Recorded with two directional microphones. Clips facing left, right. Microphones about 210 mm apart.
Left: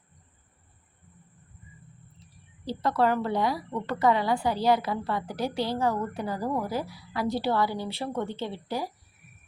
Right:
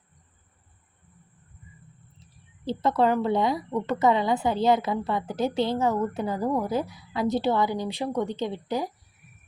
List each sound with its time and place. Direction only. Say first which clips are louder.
2.6 s a woman's voice: right 2 dB; 20° right (ahead or behind)